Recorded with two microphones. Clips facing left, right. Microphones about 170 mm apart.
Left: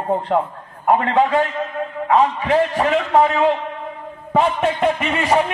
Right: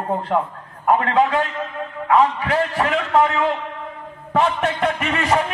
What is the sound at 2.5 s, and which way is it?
A man's voice, 20° left (ahead or behind).